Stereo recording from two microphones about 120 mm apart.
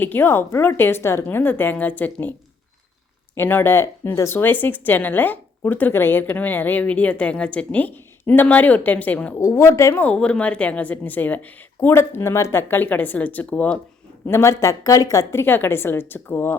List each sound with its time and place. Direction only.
0.0 s speech: 15° left (ahead or behind)
3.3 s speech: 20° left (ahead or behind)
9.4 s a woman's voice: 25° left (ahead or behind)
10.0 s speech: 10° left (ahead or behind)
14.3 s a woman's voice: 20° left (ahead or behind)